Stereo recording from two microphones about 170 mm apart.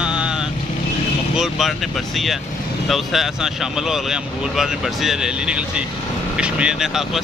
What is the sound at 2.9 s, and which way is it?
Speech, centre (ahead or behind).